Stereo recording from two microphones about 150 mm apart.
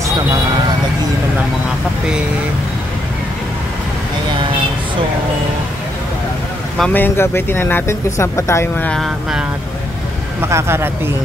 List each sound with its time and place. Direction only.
6.8 s speech: 10° left (ahead or behind)
8.9 s vehicle: centre (ahead or behind)
10.5 s speech: 15° right (ahead or behind)